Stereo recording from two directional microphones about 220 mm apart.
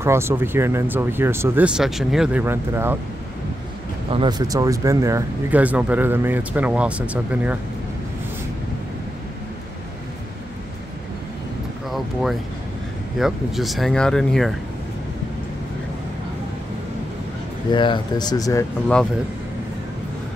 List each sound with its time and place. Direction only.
0.0 s speech: 10° right (ahead or behind)
4.1 s speech: 20° right (ahead or behind)
11.9 s a sound: centre (ahead or behind)
13.2 s speech: centre (ahead or behind)
17.6 s speech: 20° left (ahead or behind)